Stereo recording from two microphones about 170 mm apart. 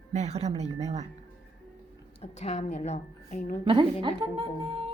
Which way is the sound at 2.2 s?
40° left (ahead or behind).